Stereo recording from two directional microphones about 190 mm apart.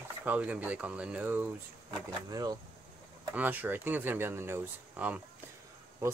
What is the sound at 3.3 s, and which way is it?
Speech, 10° right (ahead or behind).